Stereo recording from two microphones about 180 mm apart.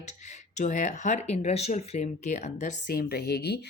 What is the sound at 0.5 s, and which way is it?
Speech, 45° left (ahead or behind).